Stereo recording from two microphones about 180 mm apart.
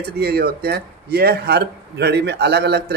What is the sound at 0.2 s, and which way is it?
A man's voice, 60° right (ahead or behind).